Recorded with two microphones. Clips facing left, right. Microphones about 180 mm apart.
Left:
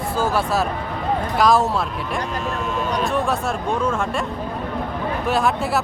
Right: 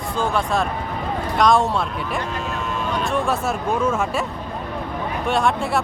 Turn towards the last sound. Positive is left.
turn(degrees=5)  # may be behind; listen again after turning